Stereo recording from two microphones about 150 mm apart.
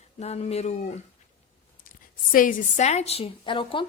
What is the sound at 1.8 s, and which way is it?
A woman's voice, 65° left (ahead or behind).